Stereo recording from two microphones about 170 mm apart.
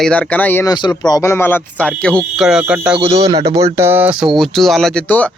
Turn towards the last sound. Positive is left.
turn(degrees=10)  # may be behind; listen again after turning